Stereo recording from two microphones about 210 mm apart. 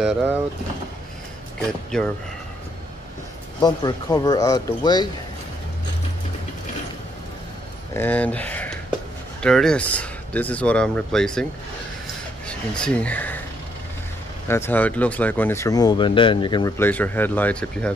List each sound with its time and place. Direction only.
0.0 s speech: 10° right (ahead or behind)
1.9 s speech: 5° left (ahead or behind)
3.6 s speech: 20° left (ahead or behind)
7.9 s speech: 10° left (ahead or behind)
12.4 s speech: 5° left (ahead or behind)
14.5 s speech: 10° left (ahead or behind)